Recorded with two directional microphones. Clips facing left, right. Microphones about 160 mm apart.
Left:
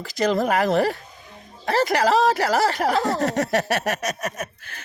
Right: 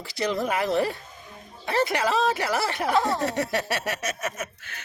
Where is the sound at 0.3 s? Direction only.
45° left (ahead or behind).